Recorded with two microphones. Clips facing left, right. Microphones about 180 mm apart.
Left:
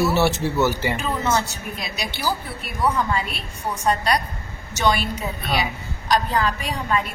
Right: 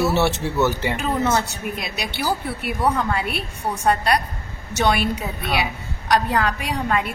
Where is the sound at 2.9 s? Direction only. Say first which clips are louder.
Right 1 dB; 65° right (ahead or behind).